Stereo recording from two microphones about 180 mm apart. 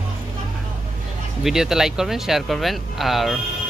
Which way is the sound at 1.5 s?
Centre (ahead or behind).